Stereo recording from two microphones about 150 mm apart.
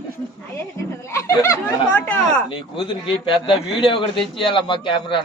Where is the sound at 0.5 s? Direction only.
15° left (ahead or behind).